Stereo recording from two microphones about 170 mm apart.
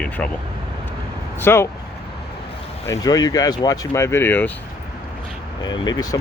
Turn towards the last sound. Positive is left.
turn(degrees=20)  # may be behind; listen again after turning